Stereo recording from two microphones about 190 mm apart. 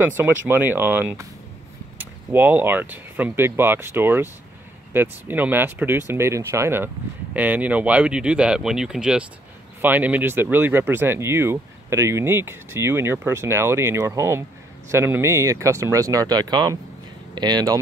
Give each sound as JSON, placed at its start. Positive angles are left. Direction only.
{"t": 0.5, "sound": "speech", "side_deg": -10}
{"t": 2.3, "sound": "speech", "side_deg": -10}